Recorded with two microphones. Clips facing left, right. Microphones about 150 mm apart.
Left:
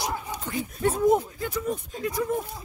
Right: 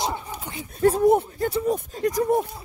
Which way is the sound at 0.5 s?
25° right (ahead or behind).